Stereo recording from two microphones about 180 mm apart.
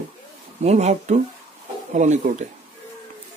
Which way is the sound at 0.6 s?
40° right (ahead or behind).